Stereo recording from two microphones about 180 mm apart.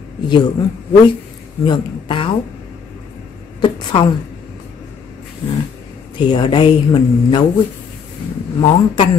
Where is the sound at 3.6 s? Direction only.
25° left (ahead or behind).